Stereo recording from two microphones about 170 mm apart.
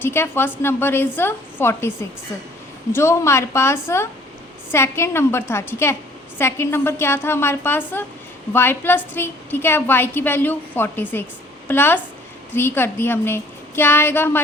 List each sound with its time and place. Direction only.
0.0 s a woman's voice: 15° left (ahead or behind)